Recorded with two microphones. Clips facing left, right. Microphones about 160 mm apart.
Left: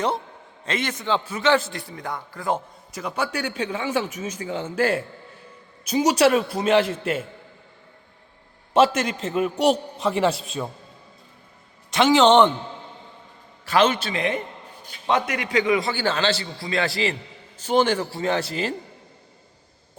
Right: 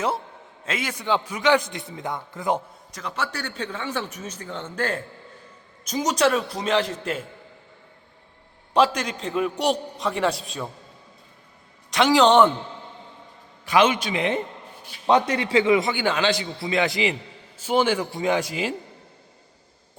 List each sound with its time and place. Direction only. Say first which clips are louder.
0.6 s a man's voice: left 2 dB; 5° right (ahead or behind)
2.9 s a man's voice: left 3 dB; 10° left (ahead or behind)
8.7 s a man's voice: left 2 dB; 5° left (ahead or behind)
11.9 s a man's voice: left 1 dB; centre (ahead or behind)
13.7 s a man's voice: even; 10° right (ahead or behind)
15.0 s a man's voice: right 3 dB; 30° right (ahead or behind); by 18.7 s 10° right (ahead or behind)